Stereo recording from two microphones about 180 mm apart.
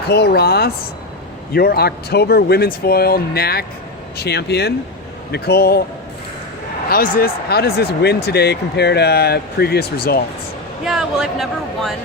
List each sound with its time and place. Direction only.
0.1 s speech: 65° left (ahead or behind)
6.8 s speech: 55° left (ahead or behind)
10.8 s speech: centre (ahead or behind)